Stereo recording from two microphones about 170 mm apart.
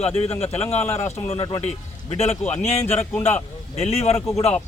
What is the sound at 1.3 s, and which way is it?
Speech, 25° left (ahead or behind).